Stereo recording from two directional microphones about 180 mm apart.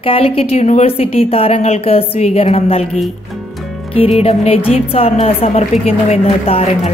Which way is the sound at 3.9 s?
35° left (ahead or behind).